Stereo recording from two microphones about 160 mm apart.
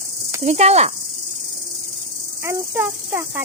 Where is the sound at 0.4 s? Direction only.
40° right (ahead or behind).